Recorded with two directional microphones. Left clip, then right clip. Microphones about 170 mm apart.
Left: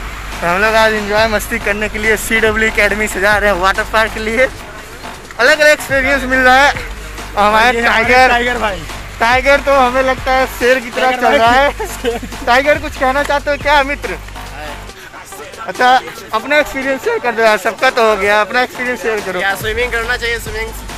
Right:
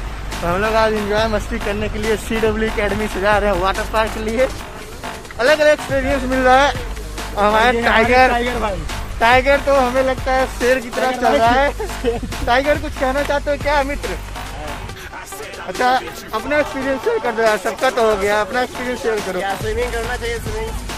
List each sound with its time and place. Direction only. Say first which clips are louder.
0.5 s a man's voice: left 5 dB; 5° left (ahead or behind)
7.3 s speech: left 4 dB; 20° left (ahead or behind)
8.3 s a man's voice: left 5 dB; 15° left (ahead or behind)
9.2 s speech: left 2 dB; 35° left (ahead or behind)
15.8 s speech: left 6 dB; 25° left (ahead or behind)
19.4 s speech: left 5 dB; 5° right (ahead or behind)